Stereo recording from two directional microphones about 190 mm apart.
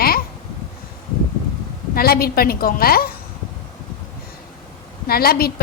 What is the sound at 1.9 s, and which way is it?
A woman's voice, 50° left (ahead or behind).